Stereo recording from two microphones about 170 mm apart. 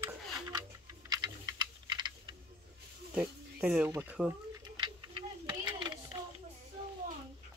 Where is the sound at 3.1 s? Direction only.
5° right (ahead or behind).